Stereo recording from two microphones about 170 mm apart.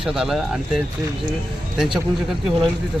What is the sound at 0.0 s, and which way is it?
Speech, centre (ahead or behind).